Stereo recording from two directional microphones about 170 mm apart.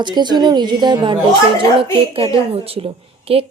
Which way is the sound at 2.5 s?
35° right (ahead or behind).